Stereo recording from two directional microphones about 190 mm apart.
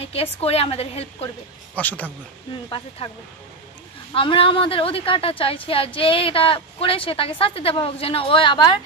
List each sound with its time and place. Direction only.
0.0 s speech: 30° left (ahead or behind)
1.8 s a man's voice: 10° left (ahead or behind)
4.1 s a woman's voice: 30° left (ahead or behind)